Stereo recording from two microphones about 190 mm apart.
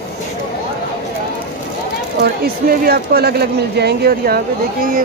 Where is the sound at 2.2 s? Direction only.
50° right (ahead or behind).